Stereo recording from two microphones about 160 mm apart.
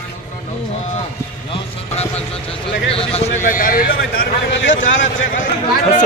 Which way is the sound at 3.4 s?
60° left (ahead or behind).